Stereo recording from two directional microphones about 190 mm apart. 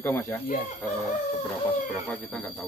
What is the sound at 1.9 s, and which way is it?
Speech, 5° left (ahead or behind).